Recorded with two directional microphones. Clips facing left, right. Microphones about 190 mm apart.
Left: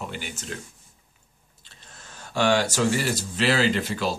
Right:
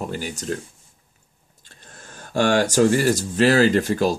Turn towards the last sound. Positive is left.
turn(degrees=-45)  # may be behind; listen again after turning